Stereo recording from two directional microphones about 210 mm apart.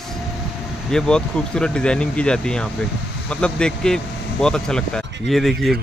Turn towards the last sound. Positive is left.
turn(degrees=0)  # may be behind; listen again after turning